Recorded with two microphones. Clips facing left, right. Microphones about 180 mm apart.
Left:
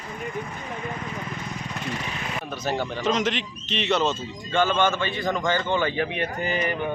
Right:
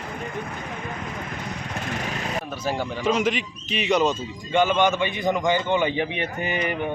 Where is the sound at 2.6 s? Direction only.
10° right (ahead or behind).